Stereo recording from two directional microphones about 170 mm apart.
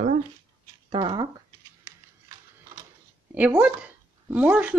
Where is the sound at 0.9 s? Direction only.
30° right (ahead or behind).